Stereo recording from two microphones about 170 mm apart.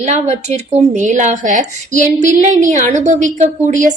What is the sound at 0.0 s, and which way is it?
A woman's voice, 45° right (ahead or behind).